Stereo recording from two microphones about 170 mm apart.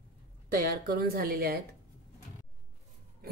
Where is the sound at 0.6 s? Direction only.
60° right (ahead or behind).